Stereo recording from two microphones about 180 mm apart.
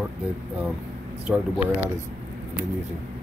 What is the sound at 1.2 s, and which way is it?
Speech, 10° right (ahead or behind).